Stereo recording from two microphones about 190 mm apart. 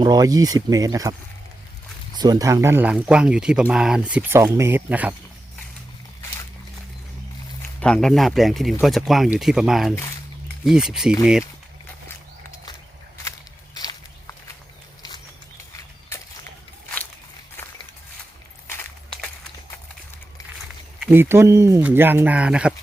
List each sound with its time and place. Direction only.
0.0 s speech: 20° right (ahead or behind)
2.1 s speech: 20° right (ahead or behind)
7.8 s speech: 5° left (ahead or behind)
9.9 s speech: 15° left (ahead or behind)
10.7 s speech: centre (ahead or behind)
13.7 s walk: 20° left (ahead or behind)
15.7 s a sound: 15° left (ahead or behind)
18.7 s a sound: 10° left (ahead or behind)
21.0 s speech: 10° right (ahead or behind)